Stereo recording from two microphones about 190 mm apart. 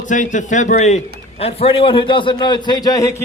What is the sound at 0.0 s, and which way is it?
A man's voice, 40° left (ahead or behind).